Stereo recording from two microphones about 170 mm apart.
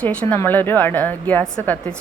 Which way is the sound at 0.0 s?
10° left (ahead or behind).